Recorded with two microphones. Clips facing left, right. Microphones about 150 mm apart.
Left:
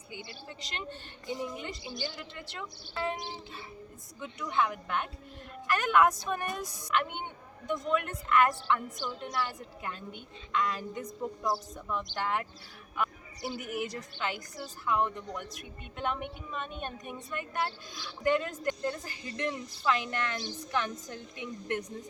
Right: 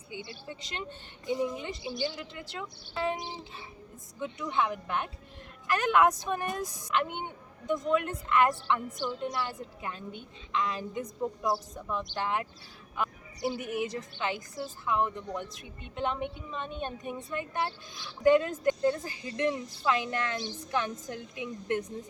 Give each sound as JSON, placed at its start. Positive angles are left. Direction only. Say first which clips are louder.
{"t": 0.1, "sound": "a woman's voice", "louder": "right 3 dB", "side_deg": -20}